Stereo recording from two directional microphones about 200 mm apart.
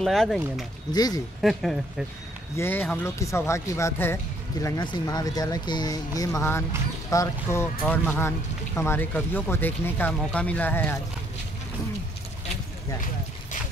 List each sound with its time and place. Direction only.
0.0 s speech: centre (ahead or behind)
0.9 s speech: 20° left (ahead or behind)
1.4 s speech: centre (ahead or behind)
2.5 s speech: 10° left (ahead or behind)